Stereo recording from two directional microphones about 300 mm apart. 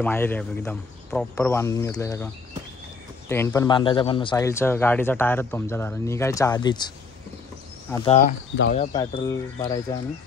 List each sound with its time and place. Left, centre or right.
0.0 s speech: centre
3.3 s speech: centre
7.9 s speech: centre
8.9 s speech: centre